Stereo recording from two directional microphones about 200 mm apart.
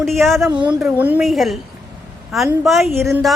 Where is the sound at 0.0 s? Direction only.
Centre (ahead or behind).